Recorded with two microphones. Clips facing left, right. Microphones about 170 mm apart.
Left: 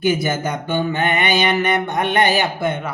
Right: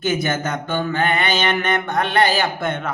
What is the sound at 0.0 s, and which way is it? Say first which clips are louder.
Mantra: left 2 dB; 10° left (ahead or behind).